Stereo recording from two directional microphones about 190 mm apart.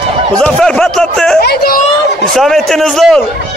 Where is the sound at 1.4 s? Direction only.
55° left (ahead or behind).